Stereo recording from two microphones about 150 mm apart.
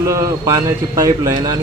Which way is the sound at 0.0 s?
20° right (ahead or behind).